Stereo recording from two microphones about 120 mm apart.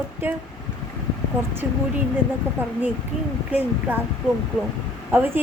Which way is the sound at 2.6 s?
15° right (ahead or behind).